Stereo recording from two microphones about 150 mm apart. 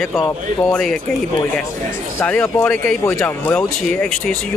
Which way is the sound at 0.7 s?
5° left (ahead or behind).